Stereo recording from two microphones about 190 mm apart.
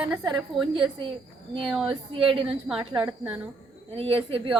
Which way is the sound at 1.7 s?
5° right (ahead or behind).